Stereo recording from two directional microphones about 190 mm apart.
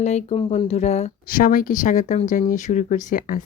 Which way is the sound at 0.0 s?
35° left (ahead or behind).